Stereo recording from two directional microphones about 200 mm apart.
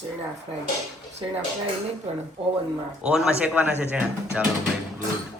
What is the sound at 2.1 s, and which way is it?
Speech, 30° right (ahead or behind).